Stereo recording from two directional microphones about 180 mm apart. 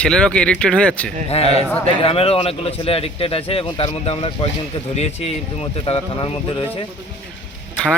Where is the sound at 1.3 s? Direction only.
35° left (ahead or behind).